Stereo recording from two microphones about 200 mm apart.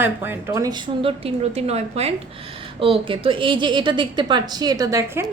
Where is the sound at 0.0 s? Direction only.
10° right (ahead or behind).